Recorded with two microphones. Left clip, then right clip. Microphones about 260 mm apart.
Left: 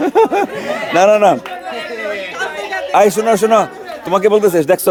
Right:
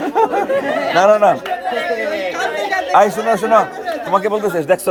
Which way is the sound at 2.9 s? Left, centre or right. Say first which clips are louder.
Left 2 dB; left.